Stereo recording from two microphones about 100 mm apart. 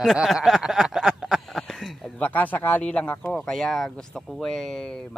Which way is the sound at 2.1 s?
15° left (ahead or behind).